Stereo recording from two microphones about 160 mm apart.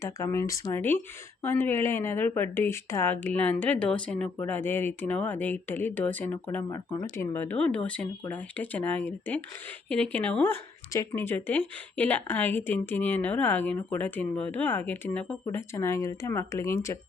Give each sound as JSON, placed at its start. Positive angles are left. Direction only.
{"t": 0.0, "sound": "speech", "side_deg": 15}